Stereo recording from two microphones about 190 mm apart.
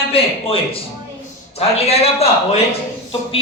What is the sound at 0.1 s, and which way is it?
A man's voice, 30° left (ahead or behind).